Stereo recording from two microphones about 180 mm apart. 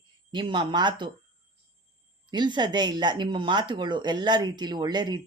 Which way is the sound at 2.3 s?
25° right (ahead or behind).